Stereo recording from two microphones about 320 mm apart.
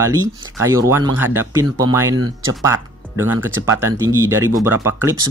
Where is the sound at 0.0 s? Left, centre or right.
Centre.